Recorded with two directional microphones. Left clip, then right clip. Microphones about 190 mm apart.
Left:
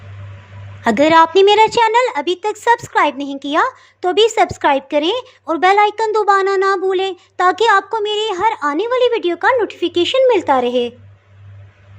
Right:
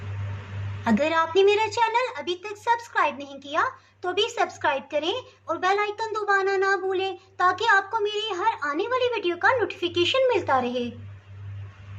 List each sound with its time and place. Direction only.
0.9 s a woman's voice: 40° left (ahead or behind)